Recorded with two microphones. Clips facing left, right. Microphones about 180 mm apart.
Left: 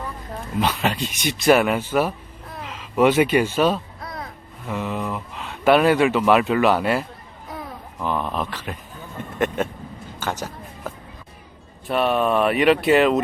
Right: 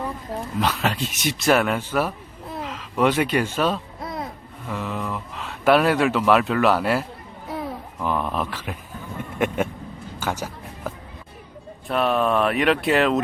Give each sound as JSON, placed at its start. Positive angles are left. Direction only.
{"t": 0.6, "sound": "speech", "side_deg": 0}
{"t": 4.0, "sound": "a sound", "side_deg": -20}
{"t": 4.7, "sound": "speech", "side_deg": 0}
{"t": 8.0, "sound": "speech", "side_deg": -5}
{"t": 10.2, "sound": "music", "side_deg": -10}
{"t": 11.9, "sound": "speech", "side_deg": 0}